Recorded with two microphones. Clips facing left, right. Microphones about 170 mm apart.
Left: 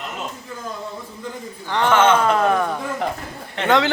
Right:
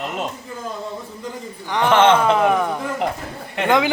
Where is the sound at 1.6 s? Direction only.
15° right (ahead or behind).